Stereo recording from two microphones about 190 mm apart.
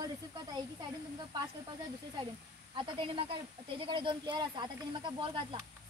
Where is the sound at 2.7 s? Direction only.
25° right (ahead or behind).